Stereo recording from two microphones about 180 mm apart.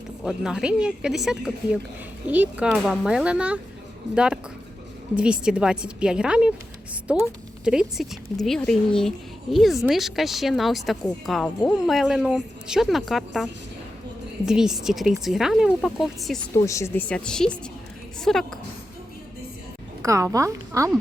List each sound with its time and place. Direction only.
0.3 s a woman's voice: 5° right (ahead or behind)
16.6 s a woman's voice: 15° left (ahead or behind)
20.0 s a woman's voice: 15° right (ahead or behind)